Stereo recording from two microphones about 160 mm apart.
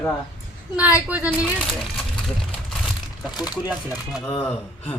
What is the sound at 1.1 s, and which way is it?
Speech, 10° right (ahead or behind).